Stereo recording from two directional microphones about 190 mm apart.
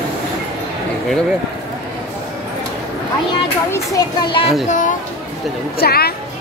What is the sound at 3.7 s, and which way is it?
Speech, 20° left (ahead or behind).